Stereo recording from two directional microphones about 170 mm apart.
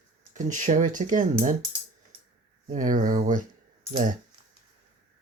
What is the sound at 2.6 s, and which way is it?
Speech, 50° right (ahead or behind).